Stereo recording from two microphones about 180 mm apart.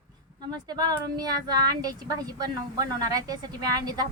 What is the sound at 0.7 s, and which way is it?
Speech, 20° right (ahead or behind).